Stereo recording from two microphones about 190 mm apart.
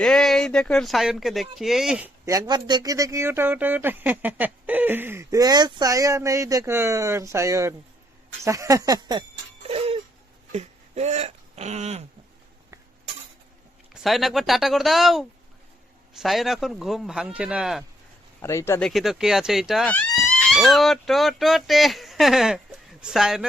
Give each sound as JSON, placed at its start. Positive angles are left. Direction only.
{"t": 0.0, "sound": "speech", "side_deg": 5}
{"t": 8.4, "sound": "a sound", "side_deg": -15}
{"t": 9.6, "sound": "a sound", "side_deg": -30}
{"t": 10.5, "sound": "speech", "side_deg": -35}
{"t": 13.9, "sound": "speech", "side_deg": 0}
{"t": 18.4, "sound": "speech", "side_deg": 15}